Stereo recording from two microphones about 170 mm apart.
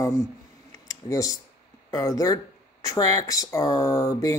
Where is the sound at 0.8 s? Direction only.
20° left (ahead or behind).